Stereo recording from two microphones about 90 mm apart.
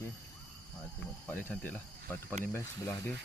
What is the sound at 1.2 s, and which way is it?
Speech, 15° left (ahead or behind).